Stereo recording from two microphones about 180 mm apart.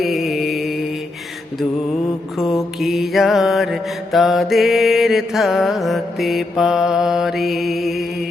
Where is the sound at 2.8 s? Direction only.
Centre (ahead or behind).